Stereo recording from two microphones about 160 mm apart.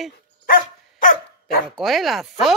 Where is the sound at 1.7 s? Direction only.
Centre (ahead or behind).